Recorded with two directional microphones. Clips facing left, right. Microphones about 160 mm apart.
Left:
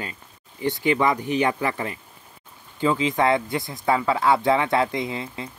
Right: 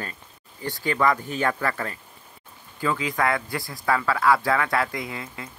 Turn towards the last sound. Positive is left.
turn(degrees=25)  # may be behind; listen again after turning